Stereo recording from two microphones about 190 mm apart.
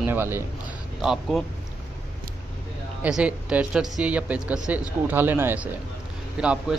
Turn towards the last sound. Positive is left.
turn(degrees=-5)  # may be behind; listen again after turning